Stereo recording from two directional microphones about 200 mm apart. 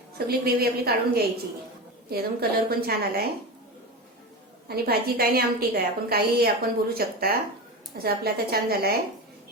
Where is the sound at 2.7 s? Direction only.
50° right (ahead or behind).